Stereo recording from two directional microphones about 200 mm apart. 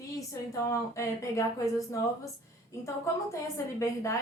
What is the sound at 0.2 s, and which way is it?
Speech, 15° left (ahead or behind).